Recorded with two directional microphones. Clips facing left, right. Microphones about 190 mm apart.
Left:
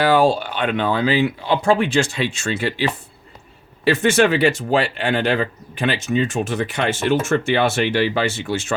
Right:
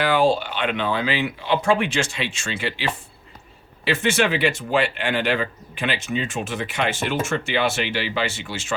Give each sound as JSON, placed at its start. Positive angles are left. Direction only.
{"t": 0.0, "sound": "speech", "side_deg": 40}